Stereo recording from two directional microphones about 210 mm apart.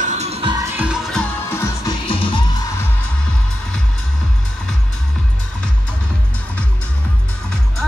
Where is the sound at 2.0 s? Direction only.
25° left (ahead or behind).